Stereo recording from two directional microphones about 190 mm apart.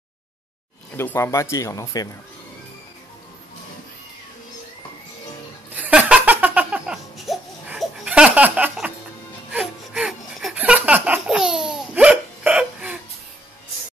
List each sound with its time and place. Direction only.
0.9 s speech: 15° left (ahead or behind)
5.8 s laughter: 5° right (ahead or behind)